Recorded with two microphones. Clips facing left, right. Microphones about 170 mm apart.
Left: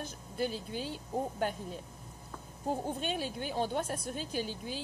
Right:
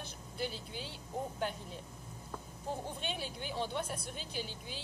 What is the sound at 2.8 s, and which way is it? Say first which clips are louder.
A woman's voice: left 6 dB; 45° left (ahead or behind).